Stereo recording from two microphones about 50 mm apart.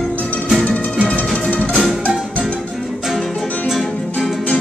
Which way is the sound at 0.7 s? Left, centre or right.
Left.